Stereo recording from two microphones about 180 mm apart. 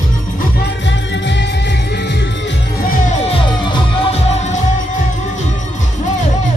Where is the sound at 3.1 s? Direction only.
30° left (ahead or behind); by 6.2 s 45° left (ahead or behind).